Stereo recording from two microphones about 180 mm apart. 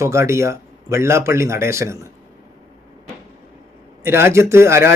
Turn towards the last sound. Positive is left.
turn(degrees=-15)  # may be behind; listen again after turning